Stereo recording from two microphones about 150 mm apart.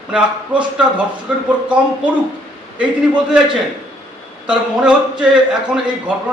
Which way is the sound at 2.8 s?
5° right (ahead or behind).